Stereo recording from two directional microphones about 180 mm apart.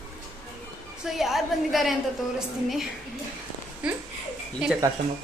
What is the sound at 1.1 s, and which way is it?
A woman's voice, centre (ahead or behind).